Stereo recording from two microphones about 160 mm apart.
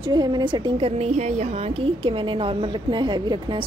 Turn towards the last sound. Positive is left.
turn(degrees=-30)  # may be behind; listen again after turning